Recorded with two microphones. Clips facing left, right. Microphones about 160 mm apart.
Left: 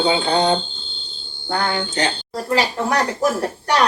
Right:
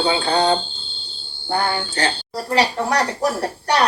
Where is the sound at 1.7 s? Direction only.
15° left (ahead or behind).